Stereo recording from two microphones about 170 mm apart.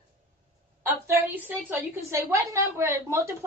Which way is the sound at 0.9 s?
15° right (ahead or behind).